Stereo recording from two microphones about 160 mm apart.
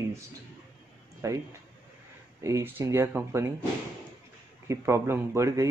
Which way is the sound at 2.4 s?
20° right (ahead or behind).